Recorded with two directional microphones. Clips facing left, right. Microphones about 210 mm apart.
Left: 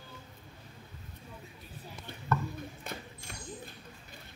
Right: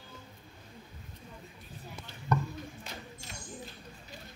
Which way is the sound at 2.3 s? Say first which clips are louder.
Right 1 dB; 15° right (ahead or behind).